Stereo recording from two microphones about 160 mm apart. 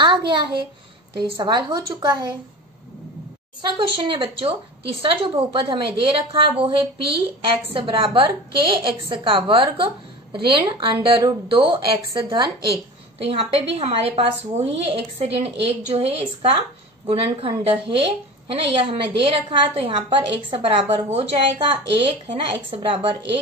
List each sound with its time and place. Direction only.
0.3 s a woman's voice: 30° right (ahead or behind)
3.7 s a woman's voice: 35° right (ahead or behind)